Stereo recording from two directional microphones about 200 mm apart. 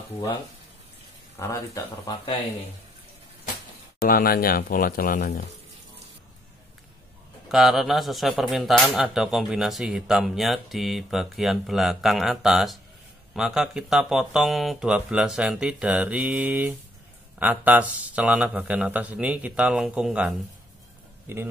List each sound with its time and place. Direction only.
1.3 s speech: 15° left (ahead or behind)
4.0 s speech: 45° left (ahead or behind)
7.4 s a man's voice: centre (ahead or behind)